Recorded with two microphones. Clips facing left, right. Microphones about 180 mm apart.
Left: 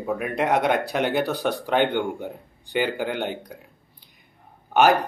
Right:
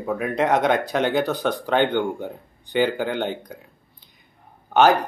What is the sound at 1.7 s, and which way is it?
Speech, 10° left (ahead or behind).